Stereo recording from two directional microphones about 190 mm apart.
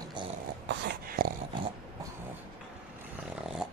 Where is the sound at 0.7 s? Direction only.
55° right (ahead or behind).